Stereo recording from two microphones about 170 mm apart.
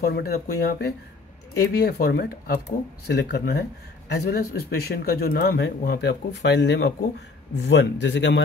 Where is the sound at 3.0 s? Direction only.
80° left.